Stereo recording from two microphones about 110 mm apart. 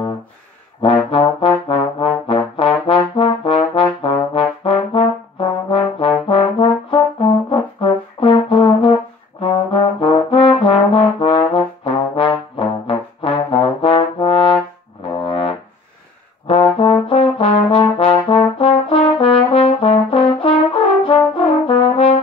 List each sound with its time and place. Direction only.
0.8 s trombone: 60° left (ahead or behind)
5.7 s brass instrument: 50° left (ahead or behind)
10.6 s trombone: 50° left (ahead or behind)
15.2 s brass instrument: 55° left (ahead or behind)
17.1 s trombone: 55° left (ahead or behind)
21.0 s brass instrument: 55° left (ahead or behind)